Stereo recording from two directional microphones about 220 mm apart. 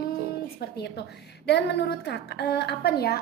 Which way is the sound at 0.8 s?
50° left (ahead or behind).